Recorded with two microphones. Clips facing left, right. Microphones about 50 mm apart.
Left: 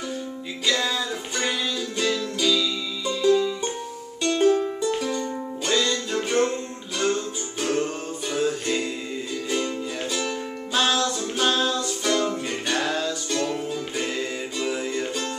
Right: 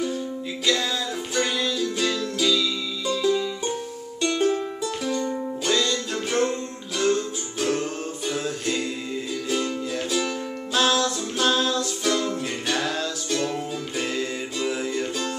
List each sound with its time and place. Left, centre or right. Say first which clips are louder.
1.3 s music: right 3 dB; centre